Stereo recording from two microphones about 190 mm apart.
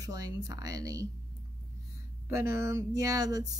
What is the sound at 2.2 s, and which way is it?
Speech, 15° right (ahead or behind).